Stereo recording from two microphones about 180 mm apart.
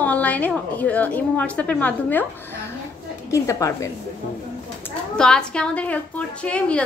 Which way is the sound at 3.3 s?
15° left (ahead or behind).